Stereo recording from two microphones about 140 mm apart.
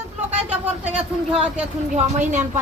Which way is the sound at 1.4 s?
5° right (ahead or behind).